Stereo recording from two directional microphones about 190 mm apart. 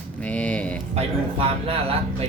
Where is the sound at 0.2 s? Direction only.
5° left (ahead or behind).